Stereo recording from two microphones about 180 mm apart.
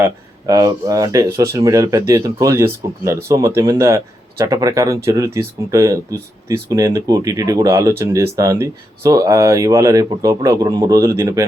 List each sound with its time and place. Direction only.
0.0 s speech: 20° right (ahead or behind)